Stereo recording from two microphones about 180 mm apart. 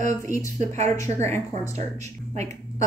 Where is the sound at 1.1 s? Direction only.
40° right (ahead or behind).